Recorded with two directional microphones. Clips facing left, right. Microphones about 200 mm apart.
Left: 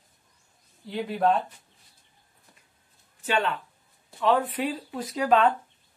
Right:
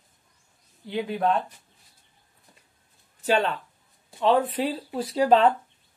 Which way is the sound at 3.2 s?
40° right (ahead or behind).